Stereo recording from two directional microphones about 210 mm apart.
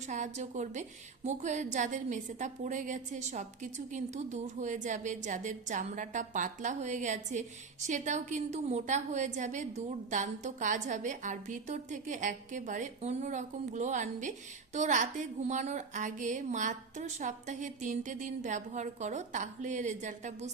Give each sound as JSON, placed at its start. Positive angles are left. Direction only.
{"t": 0.1, "sound": "a woman's voice", "side_deg": -35}